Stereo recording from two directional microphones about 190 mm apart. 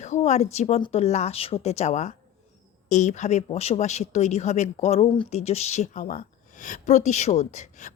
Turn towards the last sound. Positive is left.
turn(degrees=40)  # may be behind; listen again after turning